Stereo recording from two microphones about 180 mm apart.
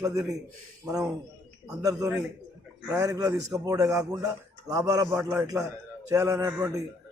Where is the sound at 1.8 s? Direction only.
20° right (ahead or behind).